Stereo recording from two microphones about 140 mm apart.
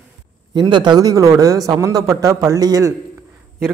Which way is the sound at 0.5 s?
30° right (ahead or behind).